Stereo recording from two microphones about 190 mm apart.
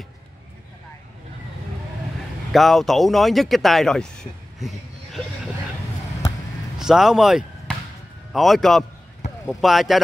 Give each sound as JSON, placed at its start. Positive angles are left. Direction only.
{"t": 2.5, "sound": "speech", "side_deg": 0}
{"t": 6.8, "sound": "a man's voice", "side_deg": 0}